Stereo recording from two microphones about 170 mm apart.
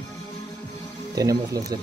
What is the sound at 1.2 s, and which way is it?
Speech, 20° right (ahead or behind).